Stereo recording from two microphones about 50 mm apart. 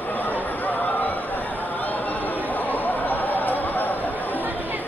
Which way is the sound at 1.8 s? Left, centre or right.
Left.